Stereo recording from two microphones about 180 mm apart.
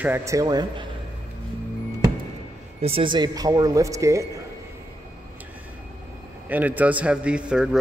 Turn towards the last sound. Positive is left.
turn(degrees=-5)  # may be behind; listen again after turning